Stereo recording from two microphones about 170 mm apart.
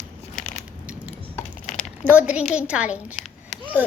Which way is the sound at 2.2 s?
5° right (ahead or behind).